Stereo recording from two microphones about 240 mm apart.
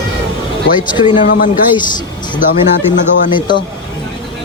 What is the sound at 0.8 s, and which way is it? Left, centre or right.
Speech, centre.